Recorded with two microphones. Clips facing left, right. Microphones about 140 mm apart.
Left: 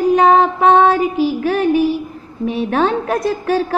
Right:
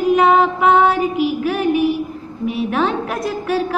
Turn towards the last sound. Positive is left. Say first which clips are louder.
# left 3 dB
turn(degrees=30)  # may be behind; listen again after turning